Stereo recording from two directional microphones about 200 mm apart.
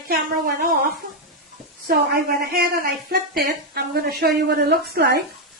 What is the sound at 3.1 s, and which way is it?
A woman's voice, 50° right (ahead or behind).